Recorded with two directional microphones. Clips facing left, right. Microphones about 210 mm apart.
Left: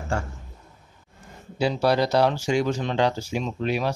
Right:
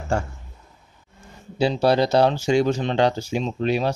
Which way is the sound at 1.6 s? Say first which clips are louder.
Right 3 dB; 25° right (ahead or behind).